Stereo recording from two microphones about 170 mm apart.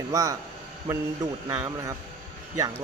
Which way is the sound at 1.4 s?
15° right (ahead or behind).